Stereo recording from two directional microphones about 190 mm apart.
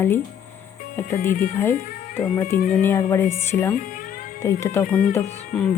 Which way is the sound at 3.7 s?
45° left (ahead or behind).